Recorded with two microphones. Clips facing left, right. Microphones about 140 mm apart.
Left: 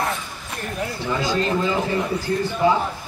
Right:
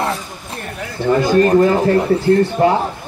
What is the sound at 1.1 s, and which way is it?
Speech, 55° right (ahead or behind).